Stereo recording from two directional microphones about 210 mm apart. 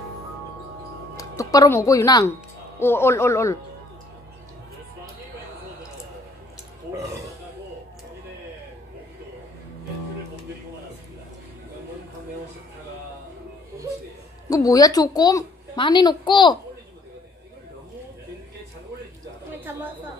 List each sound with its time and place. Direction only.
1.1 s speech: 15° left (ahead or behind)
14.5 s a woman's voice: 15° left (ahead or behind)